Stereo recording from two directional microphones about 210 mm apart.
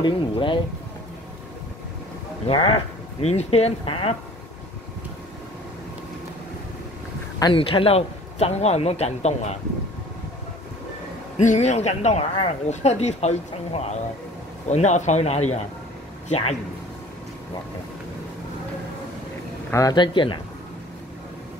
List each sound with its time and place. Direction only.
0.0 s a man's voice: 25° left (ahead or behind)
2.4 s a man's voice: 25° left (ahead or behind)
7.3 s a man's voice: 20° left (ahead or behind)
11.3 s speech: 35° left (ahead or behind)
19.7 s a man's voice: 15° left (ahead or behind)